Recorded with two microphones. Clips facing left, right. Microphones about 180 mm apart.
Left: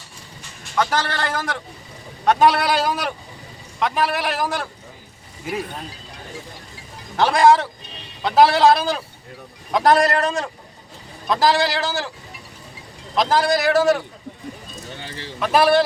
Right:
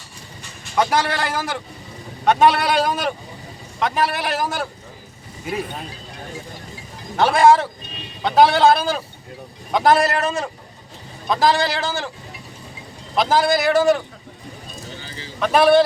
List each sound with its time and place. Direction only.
0.8 s a man's voice: 15° right (ahead or behind)
7.2 s a man's voice: centre (ahead or behind)
13.1 s a man's voice: centre (ahead or behind)
15.0 s clip-clop: 65° left (ahead or behind)
15.4 s a man's voice: centre (ahead or behind)